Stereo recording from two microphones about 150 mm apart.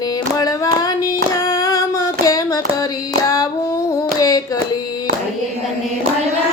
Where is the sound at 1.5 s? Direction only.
20° left (ahead or behind).